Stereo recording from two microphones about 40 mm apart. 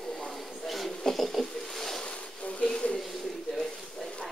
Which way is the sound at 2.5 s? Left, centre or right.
Left.